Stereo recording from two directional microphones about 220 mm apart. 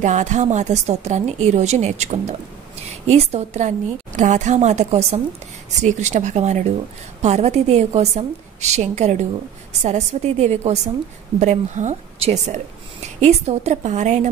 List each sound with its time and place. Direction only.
0.0 s a woman's voice: 35° right (ahead or behind)